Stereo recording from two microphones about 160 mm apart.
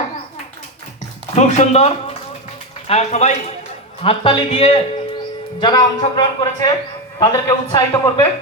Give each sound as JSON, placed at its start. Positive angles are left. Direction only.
{"t": 1.4, "sound": "a man's voice", "side_deg": 45}
{"t": 4.0, "sound": "speech", "side_deg": 35}